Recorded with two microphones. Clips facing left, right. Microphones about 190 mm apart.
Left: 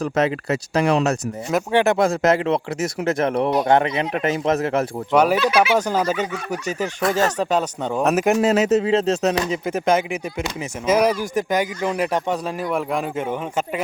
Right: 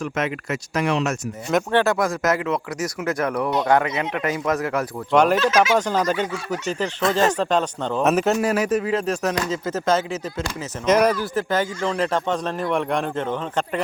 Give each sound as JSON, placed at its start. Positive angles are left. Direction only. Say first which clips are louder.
{"t": 0.0, "sound": "speech", "louder": "left 5 dB", "side_deg": 35}
{"t": 1.7, "sound": "speech", "louder": "left 5 dB", "side_deg": 20}
{"t": 5.1, "sound": "speech", "louder": "even", "side_deg": 10}